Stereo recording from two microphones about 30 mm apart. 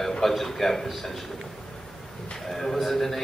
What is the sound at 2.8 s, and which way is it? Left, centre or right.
Speech, centre.